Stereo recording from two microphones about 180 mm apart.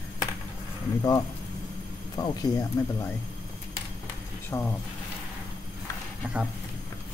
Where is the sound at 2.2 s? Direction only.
20° left (ahead or behind).